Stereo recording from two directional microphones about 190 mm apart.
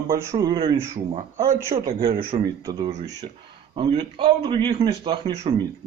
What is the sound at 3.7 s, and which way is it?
Speech, 25° right (ahead or behind).